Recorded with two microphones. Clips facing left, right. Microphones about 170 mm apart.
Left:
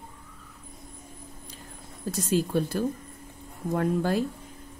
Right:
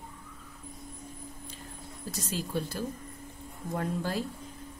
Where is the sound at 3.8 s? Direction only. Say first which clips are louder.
Left 7 dB; 55° left (ahead or behind).